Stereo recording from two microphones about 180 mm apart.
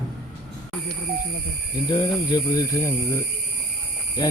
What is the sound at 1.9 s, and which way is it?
Speech, 20° left (ahead or behind).